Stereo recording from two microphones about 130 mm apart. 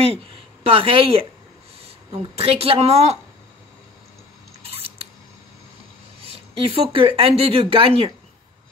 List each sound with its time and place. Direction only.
0.7 s a woman's voice: 45° right (ahead or behind)
2.3 s a woman's voice: 50° right (ahead or behind)
4.6 s biting: 50° right (ahead or behind)
6.2 s a woman's voice: 45° right (ahead or behind)